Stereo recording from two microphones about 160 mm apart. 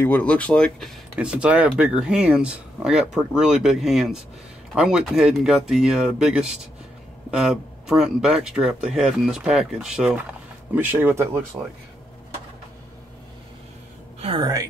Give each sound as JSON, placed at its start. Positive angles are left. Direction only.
{"t": 0.0, "sound": "speech", "side_deg": 10}
{"t": 14.2, "sound": "a woman's voice", "side_deg": -30}